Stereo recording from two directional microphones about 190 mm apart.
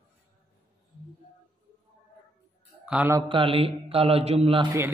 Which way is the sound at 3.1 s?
25° right (ahead or behind).